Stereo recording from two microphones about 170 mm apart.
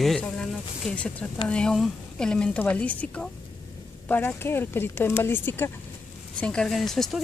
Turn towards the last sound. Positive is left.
turn(degrees=0)  # may be behind; listen again after turning